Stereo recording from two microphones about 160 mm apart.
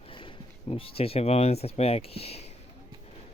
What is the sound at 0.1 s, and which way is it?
Speech, 35° left (ahead or behind).